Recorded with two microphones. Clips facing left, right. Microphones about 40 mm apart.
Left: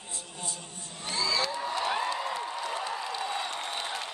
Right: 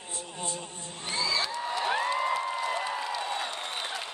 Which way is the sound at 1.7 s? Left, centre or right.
Centre.